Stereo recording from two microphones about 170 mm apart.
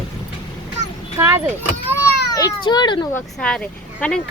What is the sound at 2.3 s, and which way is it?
Speech, 25° left (ahead or behind).